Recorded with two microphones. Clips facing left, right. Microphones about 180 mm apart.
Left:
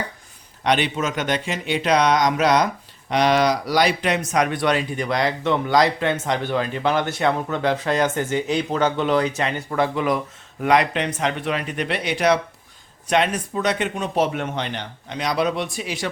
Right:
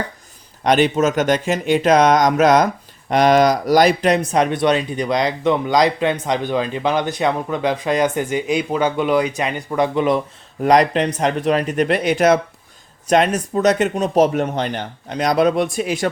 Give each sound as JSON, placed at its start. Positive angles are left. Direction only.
{"t": 0.6, "sound": "speech", "side_deg": -45}
{"t": 10.6, "sound": "speech", "side_deg": -40}